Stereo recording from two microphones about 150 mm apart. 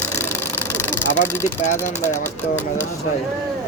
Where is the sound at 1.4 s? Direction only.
55° left (ahead or behind).